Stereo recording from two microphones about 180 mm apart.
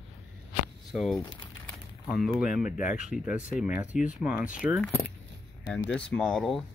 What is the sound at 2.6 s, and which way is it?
Speech, 45° left (ahead or behind).